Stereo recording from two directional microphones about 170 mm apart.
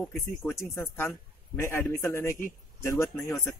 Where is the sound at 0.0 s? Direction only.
10° left (ahead or behind).